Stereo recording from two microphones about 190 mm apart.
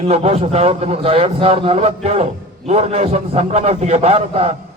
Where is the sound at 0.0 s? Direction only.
30° right (ahead or behind).